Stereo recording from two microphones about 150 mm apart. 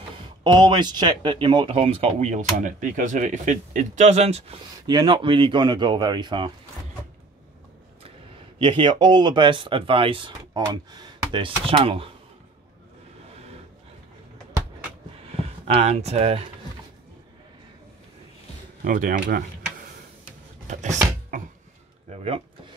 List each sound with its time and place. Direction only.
0.1 s speech: 30° right (ahead or behind); by 2.4 s 50° right (ahead or behind)
2.5 s speech: 60° right (ahead or behind)
4.8 s speech: 30° right (ahead or behind)
8.5 s speech: 35° right (ahead or behind)
15.4 s speech: 45° right (ahead or behind)
18.9 s speech: 65° right (ahead or behind)
20.6 s a sound: 55° right (ahead or behind)
22.1 s a sound: 45° right (ahead or behind)